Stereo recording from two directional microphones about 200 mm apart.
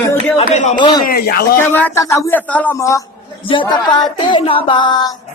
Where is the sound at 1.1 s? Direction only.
50° left (ahead or behind).